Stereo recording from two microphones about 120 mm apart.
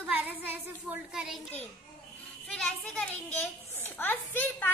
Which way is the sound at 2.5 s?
5° left (ahead or behind).